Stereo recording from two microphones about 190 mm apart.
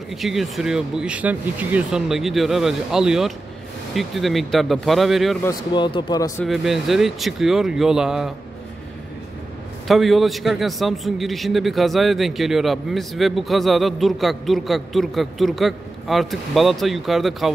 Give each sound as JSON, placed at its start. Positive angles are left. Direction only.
{"t": 0.2, "sound": "a man's voice", "side_deg": 0}
{"t": 5.4, "sound": "speech", "side_deg": 20}
{"t": 6.4, "sound": "a man's voice", "side_deg": 0}
{"t": 9.8, "sound": "a man's voice", "side_deg": 0}